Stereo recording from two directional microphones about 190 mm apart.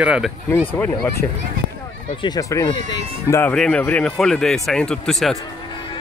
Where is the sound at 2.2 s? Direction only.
20° left (ahead or behind).